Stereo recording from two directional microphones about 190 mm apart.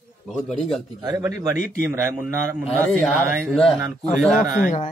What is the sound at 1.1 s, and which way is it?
A man's voice, 10° right (ahead or behind).